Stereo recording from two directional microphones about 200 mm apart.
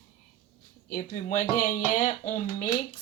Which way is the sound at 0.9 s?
40° left (ahead or behind).